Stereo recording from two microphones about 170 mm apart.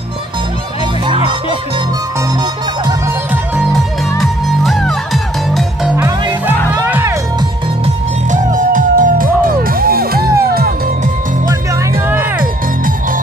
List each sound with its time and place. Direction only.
3.7 s music: centre (ahead or behind)
6.7 s music: 15° right (ahead or behind)
7.8 s music: 50° right (ahead or behind)